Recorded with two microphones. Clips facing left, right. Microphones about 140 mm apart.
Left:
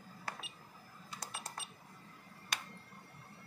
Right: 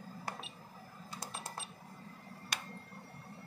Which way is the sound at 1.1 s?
30° right (ahead or behind).